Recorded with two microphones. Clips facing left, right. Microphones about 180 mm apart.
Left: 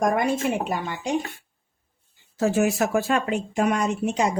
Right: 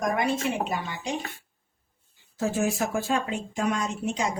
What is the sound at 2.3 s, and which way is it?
Speech, 70° left (ahead or behind).